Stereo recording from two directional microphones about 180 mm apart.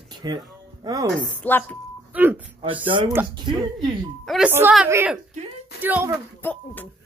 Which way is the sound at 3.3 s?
25° right (ahead or behind).